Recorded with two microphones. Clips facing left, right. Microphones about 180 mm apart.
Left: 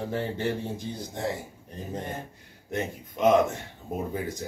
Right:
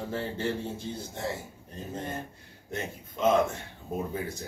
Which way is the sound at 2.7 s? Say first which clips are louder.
Left 5 dB; 15° left (ahead or behind).